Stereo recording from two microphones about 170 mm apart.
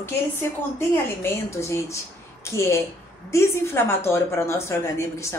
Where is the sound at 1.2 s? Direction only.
15° left (ahead or behind).